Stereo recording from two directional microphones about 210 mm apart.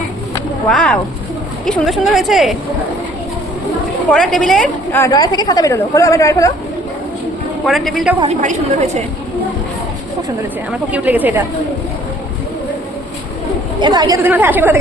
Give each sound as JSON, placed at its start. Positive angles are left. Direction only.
{"t": 0.7, "sound": "a woman's voice", "side_deg": 5}
{"t": 4.1, "sound": "a woman's voice", "side_deg": 0}
{"t": 7.6, "sound": "a woman's voice", "side_deg": 0}
{"t": 8.2, "sound": "a woman's voice", "side_deg": -35}
{"t": 10.7, "sound": "a woman's voice", "side_deg": -5}
{"t": 13.7, "sound": "a woman's voice", "side_deg": -20}